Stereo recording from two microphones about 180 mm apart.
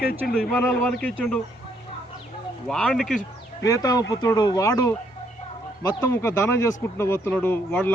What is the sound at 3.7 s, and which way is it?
Speech, 20° left (ahead or behind).